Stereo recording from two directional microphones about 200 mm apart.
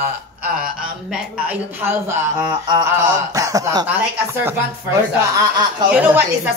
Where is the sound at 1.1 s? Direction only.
5° right (ahead or behind).